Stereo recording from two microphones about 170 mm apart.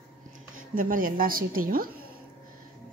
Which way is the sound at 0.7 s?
55° right (ahead or behind).